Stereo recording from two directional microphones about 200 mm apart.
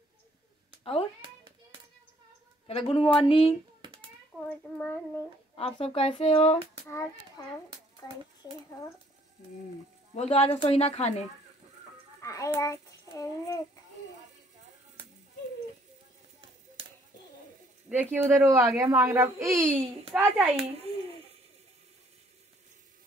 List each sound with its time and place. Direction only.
1.2 s hands: 25° right (ahead or behind)
2.6 s speech: 30° left (ahead or behind)
3.8 s a sound: 25° right (ahead or behind)
4.5 s a child's voice: 10° left (ahead or behind)
5.6 s speech: 30° left (ahead or behind)
6.9 s a child's voice: 15° left (ahead or behind)
10.1 s speech: 30° left (ahead or behind)
12.2 s a child's voice: 15° left (ahead or behind)
16.8 s a sound: 30° right (ahead or behind)
17.8 s a woman's voice: 10° right (ahead or behind)